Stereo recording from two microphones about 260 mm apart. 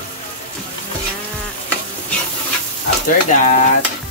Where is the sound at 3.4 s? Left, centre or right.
Left.